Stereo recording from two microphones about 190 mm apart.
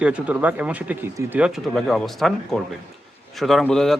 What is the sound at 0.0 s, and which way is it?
Speech, 5° right (ahead or behind).